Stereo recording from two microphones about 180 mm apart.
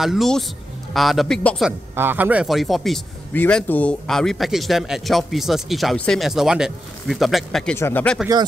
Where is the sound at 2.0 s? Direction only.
10° right (ahead or behind).